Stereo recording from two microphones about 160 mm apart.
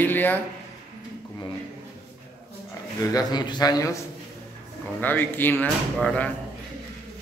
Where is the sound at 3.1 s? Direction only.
25° left (ahead or behind).